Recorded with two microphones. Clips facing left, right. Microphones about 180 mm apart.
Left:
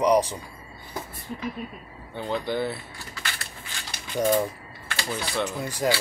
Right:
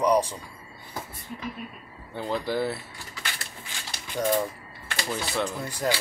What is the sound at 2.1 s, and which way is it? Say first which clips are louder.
Speech: even; centre (ahead or behind).